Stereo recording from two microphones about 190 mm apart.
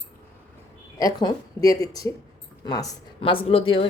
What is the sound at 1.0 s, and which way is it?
Speech, 20° left (ahead or behind).